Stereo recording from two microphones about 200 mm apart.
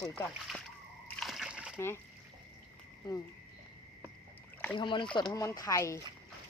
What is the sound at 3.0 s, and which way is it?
Speech, 20° left (ahead or behind).